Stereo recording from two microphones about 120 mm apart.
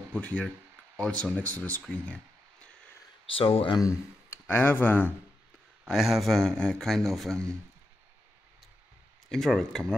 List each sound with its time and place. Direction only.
0.1 s speech: 10° left (ahead or behind)
1.8 s a sound: 10° left (ahead or behind)
3.3 s speech: 45° left (ahead or behind)
3.8 s speech: 20° left (ahead or behind)
5.9 s speech: centre (ahead or behind)
9.3 s speech: 5° left (ahead or behind)